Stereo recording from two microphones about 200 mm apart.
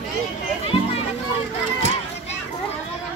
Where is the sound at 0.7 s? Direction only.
30° left (ahead or behind).